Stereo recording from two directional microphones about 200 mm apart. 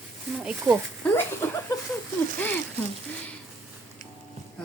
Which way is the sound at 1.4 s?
15° left (ahead or behind).